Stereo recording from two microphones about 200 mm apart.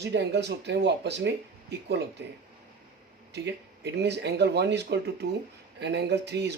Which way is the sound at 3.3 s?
55° right (ahead or behind).